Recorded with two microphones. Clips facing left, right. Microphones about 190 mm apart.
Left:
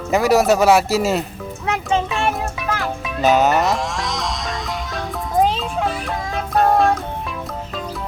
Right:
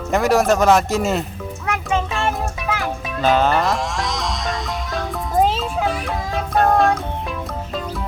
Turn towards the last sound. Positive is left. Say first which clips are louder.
# even
turn(degrees=0)  # may be behind; listen again after turning